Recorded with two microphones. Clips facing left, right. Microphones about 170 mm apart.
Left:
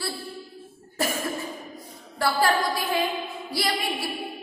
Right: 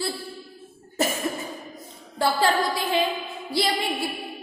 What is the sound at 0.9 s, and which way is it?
Cough, 20° right (ahead or behind).